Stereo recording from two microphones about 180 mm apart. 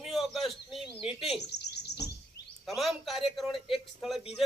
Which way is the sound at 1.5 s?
70° left (ahead or behind).